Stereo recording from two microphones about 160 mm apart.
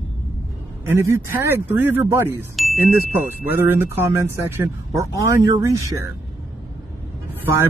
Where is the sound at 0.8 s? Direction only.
15° right (ahead or behind).